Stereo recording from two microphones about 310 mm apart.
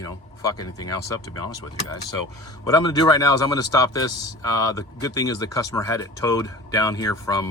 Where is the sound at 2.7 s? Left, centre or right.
Centre.